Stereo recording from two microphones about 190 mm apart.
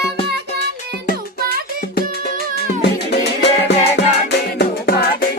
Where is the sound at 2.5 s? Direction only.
60° left (ahead or behind).